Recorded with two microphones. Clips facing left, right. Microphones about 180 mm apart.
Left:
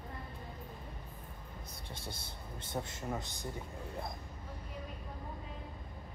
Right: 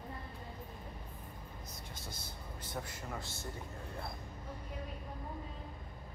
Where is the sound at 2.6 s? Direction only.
25° left (ahead or behind).